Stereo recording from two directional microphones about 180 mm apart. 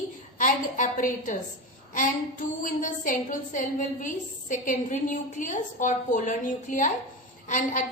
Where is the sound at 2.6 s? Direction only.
50° left (ahead or behind).